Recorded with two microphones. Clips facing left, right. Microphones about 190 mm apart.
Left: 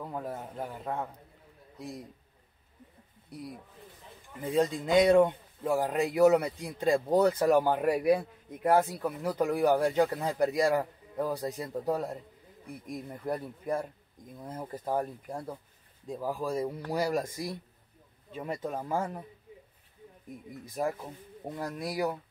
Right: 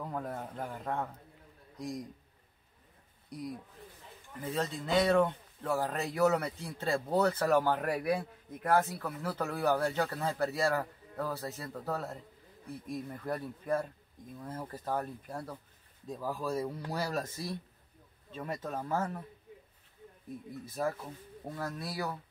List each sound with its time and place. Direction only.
0.1 s a man's voice: 5° left (ahead or behind)
4.4 s speech: 15° left (ahead or behind)
20.6 s speech: 15° left (ahead or behind)